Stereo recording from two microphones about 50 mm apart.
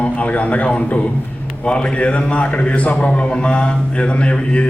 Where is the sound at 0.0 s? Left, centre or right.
Left.